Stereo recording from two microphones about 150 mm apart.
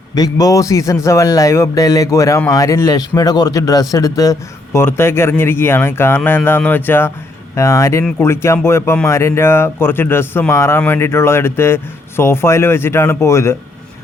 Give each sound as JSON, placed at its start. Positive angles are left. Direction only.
{"t": 0.1, "sound": "a man's voice", "side_deg": 25}